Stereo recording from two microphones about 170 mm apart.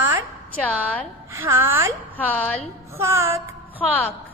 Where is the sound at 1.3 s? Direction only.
15° right (ahead or behind).